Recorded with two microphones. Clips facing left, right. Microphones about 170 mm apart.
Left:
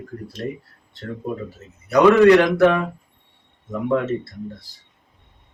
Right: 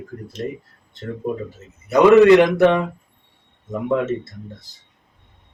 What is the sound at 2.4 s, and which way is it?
Speech, 20° right (ahead or behind).